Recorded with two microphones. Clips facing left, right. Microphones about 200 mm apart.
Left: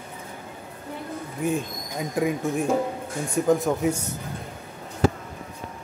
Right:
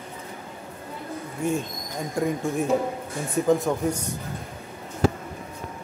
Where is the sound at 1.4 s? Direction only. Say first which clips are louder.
Even; centre (ahead or behind).